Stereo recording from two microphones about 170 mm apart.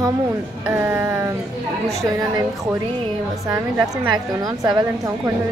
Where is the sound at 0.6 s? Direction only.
15° right (ahead or behind).